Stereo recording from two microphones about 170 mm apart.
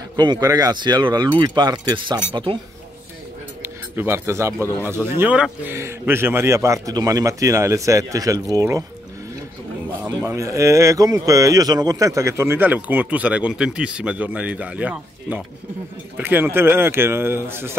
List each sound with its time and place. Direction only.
0.1 s speech: 25° right (ahead or behind)
3.6 s speech: 15° right (ahead or behind)
10.0 s speech: 15° right (ahead or behind)